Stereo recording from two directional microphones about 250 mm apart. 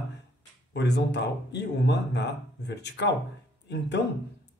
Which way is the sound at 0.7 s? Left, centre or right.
Left.